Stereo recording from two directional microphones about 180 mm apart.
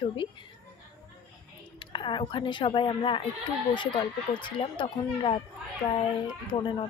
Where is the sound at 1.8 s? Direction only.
25° left (ahead or behind).